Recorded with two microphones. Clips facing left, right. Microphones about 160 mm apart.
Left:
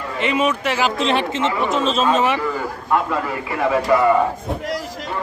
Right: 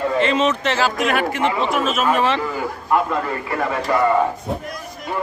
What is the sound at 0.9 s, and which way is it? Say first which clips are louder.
Speech: even; 25° left (ahead or behind).